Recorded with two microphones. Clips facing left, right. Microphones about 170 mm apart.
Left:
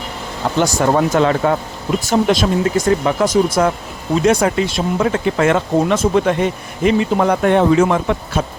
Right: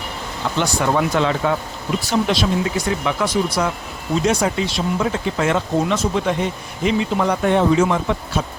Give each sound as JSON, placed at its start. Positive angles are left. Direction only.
{"t": 0.6, "sound": "speech", "side_deg": 45}
{"t": 4.3, "sound": "speech", "side_deg": 60}